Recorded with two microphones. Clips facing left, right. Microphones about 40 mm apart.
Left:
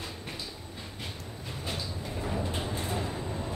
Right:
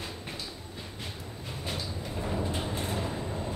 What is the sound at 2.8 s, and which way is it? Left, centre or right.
Vehicle, centre.